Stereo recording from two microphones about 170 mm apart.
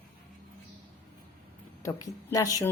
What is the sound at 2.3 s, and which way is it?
Speech, 20° left (ahead or behind).